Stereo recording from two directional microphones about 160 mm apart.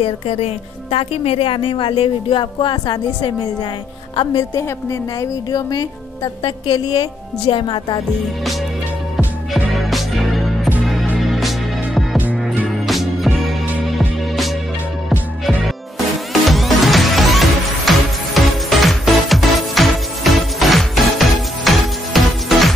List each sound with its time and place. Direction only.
0.0 s a woman's voice: 40° left (ahead or behind)
9.1 s music: centre (ahead or behind)